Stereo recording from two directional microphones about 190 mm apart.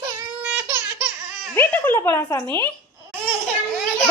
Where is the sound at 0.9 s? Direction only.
Centre (ahead or behind).